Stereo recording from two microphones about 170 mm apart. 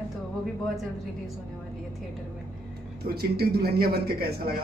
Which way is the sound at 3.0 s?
65° right (ahead or behind).